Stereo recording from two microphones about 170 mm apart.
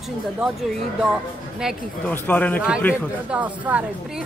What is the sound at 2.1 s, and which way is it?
Speech, 10° left (ahead or behind).